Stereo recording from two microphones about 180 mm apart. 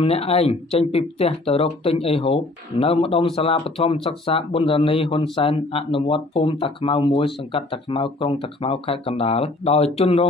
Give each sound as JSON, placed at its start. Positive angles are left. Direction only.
{"t": 0.0, "sound": "speech", "side_deg": 35}